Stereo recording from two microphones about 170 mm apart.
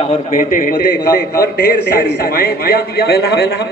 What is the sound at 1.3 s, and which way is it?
Speech, 70° left (ahead or behind).